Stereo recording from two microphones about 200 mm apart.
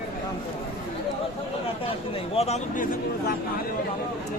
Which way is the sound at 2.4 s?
35° left (ahead or behind).